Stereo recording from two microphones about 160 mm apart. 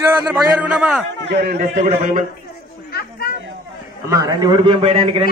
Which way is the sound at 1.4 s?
70° right (ahead or behind).